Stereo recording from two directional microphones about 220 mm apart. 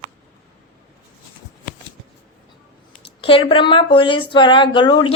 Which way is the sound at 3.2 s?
25° left (ahead or behind).